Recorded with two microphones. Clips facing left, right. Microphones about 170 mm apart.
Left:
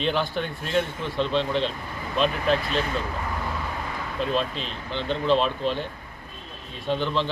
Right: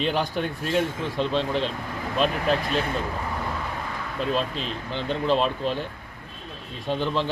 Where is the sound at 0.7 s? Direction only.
5° right (ahead or behind).